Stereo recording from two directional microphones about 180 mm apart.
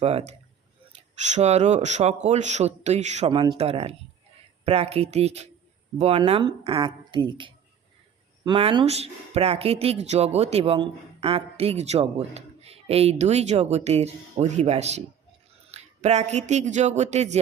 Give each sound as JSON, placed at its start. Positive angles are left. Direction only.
{"t": 0.0, "sound": "speech", "side_deg": -35}